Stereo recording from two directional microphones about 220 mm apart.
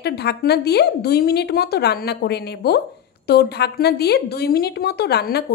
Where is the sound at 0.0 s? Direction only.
50° left (ahead or behind).